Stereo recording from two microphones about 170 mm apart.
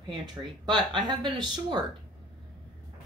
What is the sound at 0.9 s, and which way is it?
Speech, 25° right (ahead or behind).